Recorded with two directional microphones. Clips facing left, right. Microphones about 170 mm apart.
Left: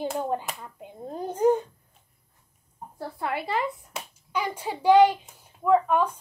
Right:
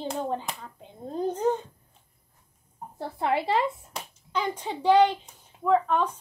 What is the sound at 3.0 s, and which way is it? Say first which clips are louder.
Speech: right 4 dB; 25° right (ahead or behind).